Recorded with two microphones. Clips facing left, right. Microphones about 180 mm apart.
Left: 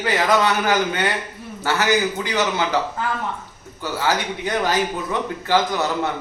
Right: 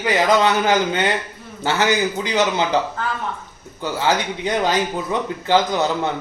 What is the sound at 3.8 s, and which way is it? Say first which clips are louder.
Speech: right 2 dB; 20° right (ahead or behind).